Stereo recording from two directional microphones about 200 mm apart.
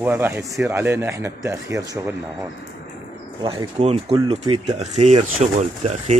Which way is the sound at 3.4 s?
25° right (ahead or behind).